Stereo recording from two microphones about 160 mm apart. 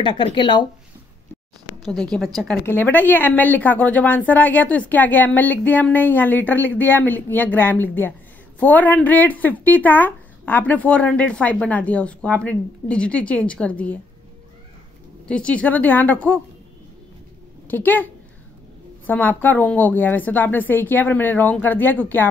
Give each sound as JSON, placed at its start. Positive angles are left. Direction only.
{"t": 0.0, "sound": "speech", "side_deg": 30}
{"t": 1.9, "sound": "a woman's voice", "side_deg": 5}
{"t": 2.6, "sound": "speech", "side_deg": 15}
{"t": 15.2, "sound": "speech", "side_deg": 5}
{"t": 17.6, "sound": "a woman's voice", "side_deg": 10}